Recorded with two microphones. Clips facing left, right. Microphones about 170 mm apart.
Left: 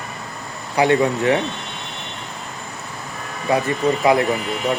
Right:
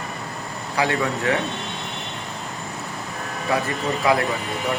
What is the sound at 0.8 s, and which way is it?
Speech, 25° left (ahead or behind).